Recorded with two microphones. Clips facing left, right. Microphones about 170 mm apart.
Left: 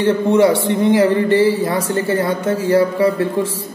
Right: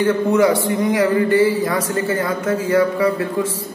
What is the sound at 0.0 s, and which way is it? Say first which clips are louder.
A man's voice: left 2 dB; 30° left (ahead or behind).